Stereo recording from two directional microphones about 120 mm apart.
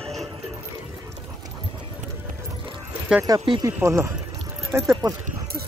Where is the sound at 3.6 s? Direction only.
25° right (ahead or behind).